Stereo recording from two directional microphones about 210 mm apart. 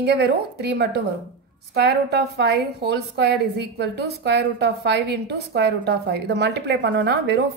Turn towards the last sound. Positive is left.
turn(degrees=-50)  # may be behind; listen again after turning